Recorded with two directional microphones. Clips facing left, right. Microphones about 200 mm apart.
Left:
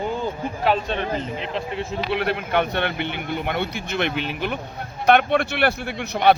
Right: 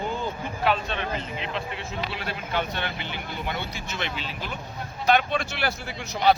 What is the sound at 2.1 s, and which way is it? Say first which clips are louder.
Speech: left 10 dB; 60° left (ahead or behind).